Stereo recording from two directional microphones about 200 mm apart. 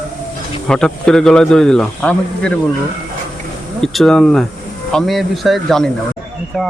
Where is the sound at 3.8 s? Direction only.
Centre (ahead or behind).